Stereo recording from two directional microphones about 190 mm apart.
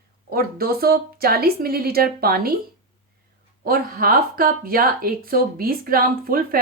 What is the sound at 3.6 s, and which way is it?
Speech, 50° right (ahead or behind).